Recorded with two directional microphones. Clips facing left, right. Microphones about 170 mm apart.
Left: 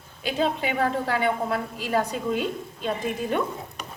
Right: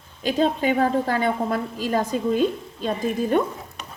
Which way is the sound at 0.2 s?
40° right (ahead or behind).